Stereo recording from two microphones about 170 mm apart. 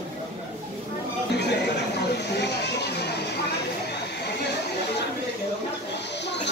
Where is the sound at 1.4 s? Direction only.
80° left.